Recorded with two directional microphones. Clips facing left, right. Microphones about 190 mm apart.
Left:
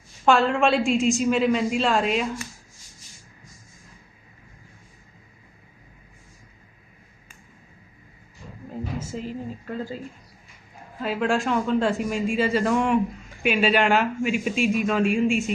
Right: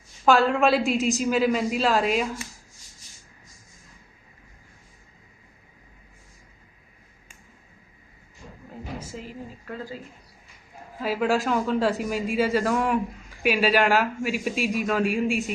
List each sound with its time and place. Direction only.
0.3 s a man's voice: centre (ahead or behind)
9.1 s speech: 25° left (ahead or behind)
11.0 s a man's voice: 5° right (ahead or behind)